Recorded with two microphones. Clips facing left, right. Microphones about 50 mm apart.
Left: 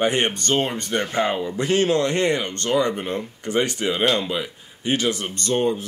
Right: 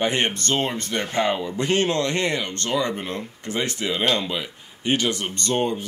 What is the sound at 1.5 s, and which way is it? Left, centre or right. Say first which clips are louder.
Speech: left 1 dB; right.